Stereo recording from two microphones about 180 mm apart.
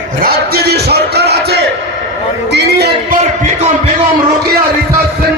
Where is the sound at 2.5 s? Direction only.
65° right (ahead or behind).